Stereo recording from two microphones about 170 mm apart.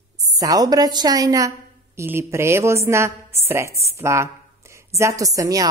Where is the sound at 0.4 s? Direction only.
20° right (ahead or behind).